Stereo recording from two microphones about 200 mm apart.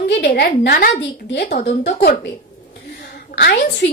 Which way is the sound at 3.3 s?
55° left (ahead or behind).